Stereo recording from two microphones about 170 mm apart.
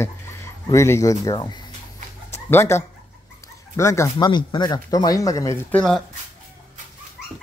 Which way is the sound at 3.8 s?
15° left (ahead or behind).